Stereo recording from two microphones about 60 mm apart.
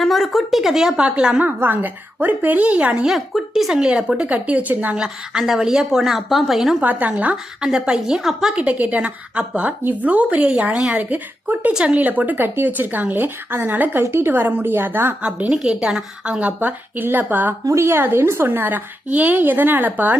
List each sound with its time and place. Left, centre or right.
0.0 s a woman's voice: centre; by 1.5 s right
1.5 s a woman's voice: right
3.1 s a woman's voice: centre; by 4.9 s right
4.9 s a woman's voice: centre
6.8 s a woman's voice: right
7.6 s a woman's voice: centre
8.5 s a woman's voice: right
11.7 s a woman's voice: centre
11.9 s a woman's voice: right
14.0 s a woman's voice: right
15.2 s a woman's voice: centre
16.6 s a woman's voice: right
17.7 s a woman's voice: right